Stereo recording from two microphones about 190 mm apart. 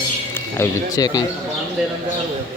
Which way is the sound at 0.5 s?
15° left (ahead or behind).